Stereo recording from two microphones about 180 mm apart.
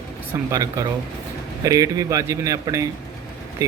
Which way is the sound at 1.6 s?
20° right (ahead or behind).